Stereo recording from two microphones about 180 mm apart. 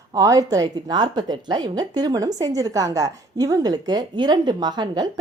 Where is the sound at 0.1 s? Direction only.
20° right (ahead or behind).